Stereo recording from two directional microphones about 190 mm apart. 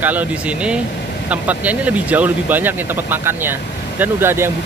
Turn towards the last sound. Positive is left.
turn(degrees=-10)  # may be behind; listen again after turning